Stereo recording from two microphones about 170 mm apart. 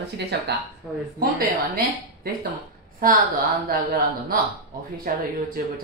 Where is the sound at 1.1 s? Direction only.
60° right (ahead or behind).